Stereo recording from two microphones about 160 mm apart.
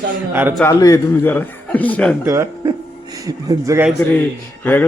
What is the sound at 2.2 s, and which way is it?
Speech, 20° right (ahead or behind).